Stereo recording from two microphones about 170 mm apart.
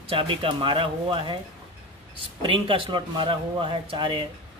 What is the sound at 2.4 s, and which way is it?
Speech, 30° right (ahead or behind).